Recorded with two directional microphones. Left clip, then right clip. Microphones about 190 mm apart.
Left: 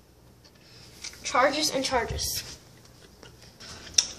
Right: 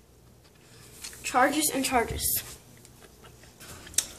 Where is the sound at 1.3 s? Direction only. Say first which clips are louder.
Left 1 dB; 35° right (ahead or behind).